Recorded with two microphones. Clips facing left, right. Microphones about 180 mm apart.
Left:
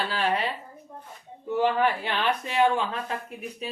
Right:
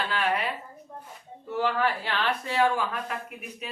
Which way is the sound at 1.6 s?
20° left (ahead or behind).